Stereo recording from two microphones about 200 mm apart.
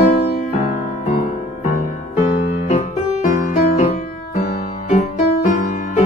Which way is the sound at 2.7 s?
35° left (ahead or behind).